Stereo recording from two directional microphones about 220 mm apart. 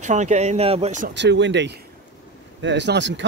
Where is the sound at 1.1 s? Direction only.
55° right (ahead or behind).